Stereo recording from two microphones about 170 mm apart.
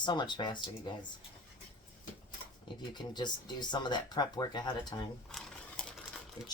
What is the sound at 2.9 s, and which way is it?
Speech, 25° left (ahead or behind).